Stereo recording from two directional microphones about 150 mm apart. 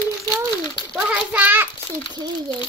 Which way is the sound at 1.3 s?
10° right (ahead or behind).